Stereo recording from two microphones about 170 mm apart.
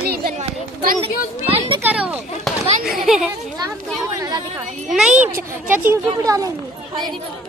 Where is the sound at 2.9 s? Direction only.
Centre (ahead or behind).